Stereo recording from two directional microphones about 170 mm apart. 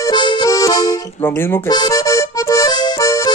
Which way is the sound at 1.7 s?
25° left (ahead or behind).